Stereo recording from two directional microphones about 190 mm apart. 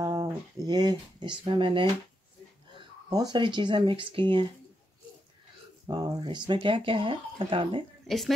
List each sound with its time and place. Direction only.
0.0 s speech: 20° right (ahead or behind)
3.1 s speech: 20° right (ahead or behind)
5.9 s speech: 20° right (ahead or behind)